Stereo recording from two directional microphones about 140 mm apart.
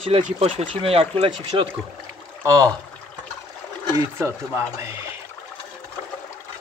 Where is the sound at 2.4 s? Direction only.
25° right (ahead or behind).